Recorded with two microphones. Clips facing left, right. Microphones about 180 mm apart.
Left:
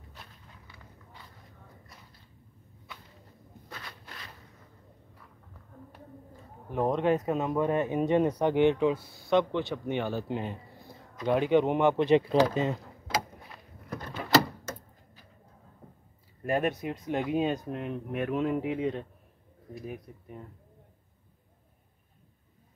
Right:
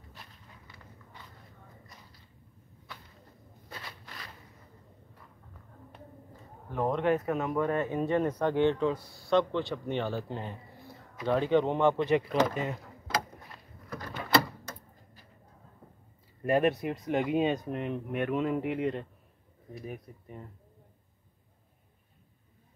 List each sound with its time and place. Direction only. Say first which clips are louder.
6.7 s speech: left 2 dB; 20° left (ahead or behind)
16.4 s speech: right 2 dB; centre (ahead or behind)